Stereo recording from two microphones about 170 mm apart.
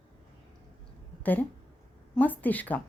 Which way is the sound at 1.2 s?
10° left (ahead or behind).